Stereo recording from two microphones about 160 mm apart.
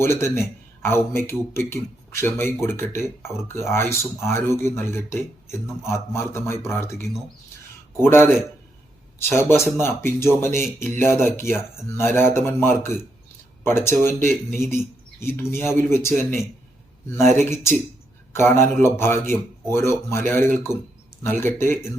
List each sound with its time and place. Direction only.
0.0 s a man's voice: 15° left (ahead or behind)
10.5 s speech: 50° right (ahead or behind)
11.0 s a man's voice: 15° left (ahead or behind)
17.4 s a man's voice: 15° left (ahead or behind)